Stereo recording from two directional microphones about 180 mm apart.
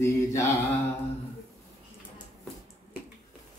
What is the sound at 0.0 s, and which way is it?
Mantra, 15° left (ahead or behind).